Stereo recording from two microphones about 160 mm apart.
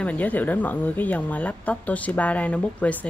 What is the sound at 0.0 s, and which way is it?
A woman's voice, 10° left (ahead or behind).